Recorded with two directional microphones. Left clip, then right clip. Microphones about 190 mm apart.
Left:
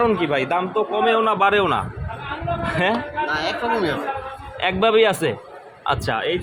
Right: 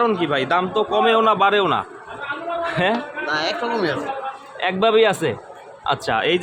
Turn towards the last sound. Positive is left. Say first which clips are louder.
# right 4 dB
turn(degrees=-20)  # may be behind; listen again after turning